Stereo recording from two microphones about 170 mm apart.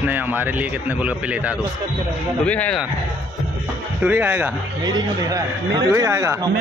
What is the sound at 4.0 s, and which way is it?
Speech, 10° right (ahead or behind).